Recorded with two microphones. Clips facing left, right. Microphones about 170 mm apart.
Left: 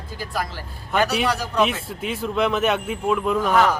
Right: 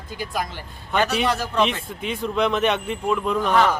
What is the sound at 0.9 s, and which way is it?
A man's voice, 5° left (ahead or behind).